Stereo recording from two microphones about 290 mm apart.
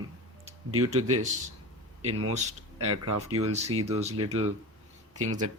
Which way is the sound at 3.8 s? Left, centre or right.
Right.